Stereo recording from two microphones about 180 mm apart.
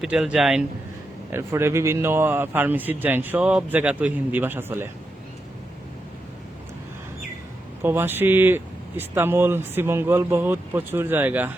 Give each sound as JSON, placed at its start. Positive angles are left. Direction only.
{"t": 0.0, "sound": "speech", "side_deg": -5}
{"t": 1.3, "sound": "speech", "side_deg": -15}
{"t": 7.8, "sound": "speech", "side_deg": -10}